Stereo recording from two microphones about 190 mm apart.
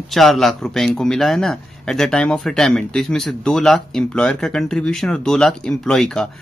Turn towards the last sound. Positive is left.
turn(degrees=5)  # may be behind; listen again after turning